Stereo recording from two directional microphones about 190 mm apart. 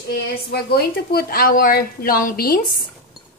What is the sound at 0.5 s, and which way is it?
Speech, 55° left (ahead or behind).